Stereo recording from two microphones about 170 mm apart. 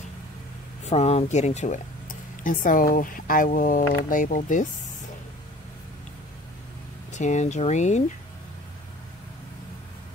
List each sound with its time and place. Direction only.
0.8 s speech: 40° left (ahead or behind)
7.1 s speech: 45° left (ahead or behind)